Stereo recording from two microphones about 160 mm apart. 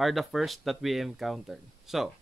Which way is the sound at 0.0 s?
Centre (ahead or behind).